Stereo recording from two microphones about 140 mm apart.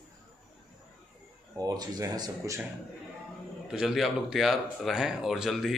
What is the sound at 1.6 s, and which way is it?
A man's voice, 25° right (ahead or behind).